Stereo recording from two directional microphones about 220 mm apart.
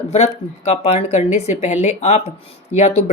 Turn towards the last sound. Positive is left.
turn(degrees=30)  # may be behind; listen again after turning